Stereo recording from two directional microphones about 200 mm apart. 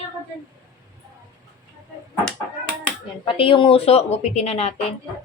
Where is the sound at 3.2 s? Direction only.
25° left (ahead or behind).